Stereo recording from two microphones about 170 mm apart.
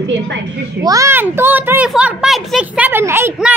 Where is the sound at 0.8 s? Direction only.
15° right (ahead or behind).